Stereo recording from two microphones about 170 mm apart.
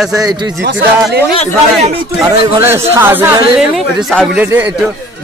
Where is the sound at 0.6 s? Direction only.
90° right.